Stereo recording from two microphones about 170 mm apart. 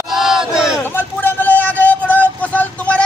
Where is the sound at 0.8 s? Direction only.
10° left (ahead or behind).